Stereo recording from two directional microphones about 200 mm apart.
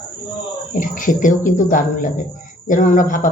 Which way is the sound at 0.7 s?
40° left (ahead or behind).